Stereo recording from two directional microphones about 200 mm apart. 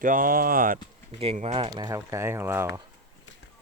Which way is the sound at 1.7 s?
20° right (ahead or behind).